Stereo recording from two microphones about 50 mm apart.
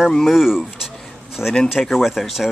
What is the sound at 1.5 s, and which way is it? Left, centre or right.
Speech, centre.